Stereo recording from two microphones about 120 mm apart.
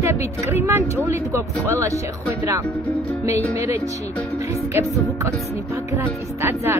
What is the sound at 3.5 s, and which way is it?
A woman's voice, 25° right (ahead or behind).